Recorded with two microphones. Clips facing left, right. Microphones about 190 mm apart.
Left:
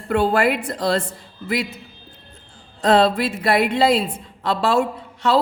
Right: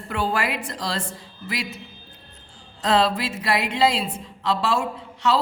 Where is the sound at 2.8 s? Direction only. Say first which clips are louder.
Left 5 dB; 55° left (ahead or behind).